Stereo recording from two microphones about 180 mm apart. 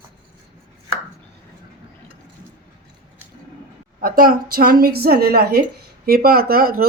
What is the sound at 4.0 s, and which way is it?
A woman's voice, 55° right (ahead or behind).